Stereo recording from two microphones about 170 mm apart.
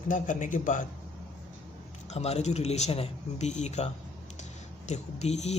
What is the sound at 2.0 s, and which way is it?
Speech, 40° left (ahead or behind).